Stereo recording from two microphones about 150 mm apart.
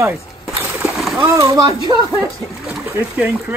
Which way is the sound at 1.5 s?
20° right (ahead or behind).